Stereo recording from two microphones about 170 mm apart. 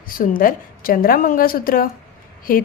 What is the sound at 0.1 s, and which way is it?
A woman's voice, 55° left (ahead or behind).